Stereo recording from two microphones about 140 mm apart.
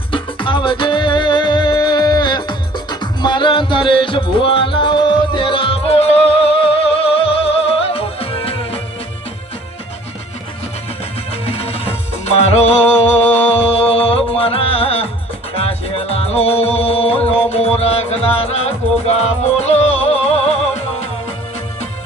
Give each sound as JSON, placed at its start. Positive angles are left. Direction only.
{"t": 0.1, "sound": "music", "side_deg": 35}
{"t": 11.3, "sound": "music", "side_deg": 45}